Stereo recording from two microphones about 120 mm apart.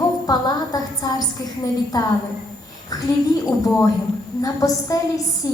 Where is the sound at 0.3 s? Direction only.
35° left (ahead or behind).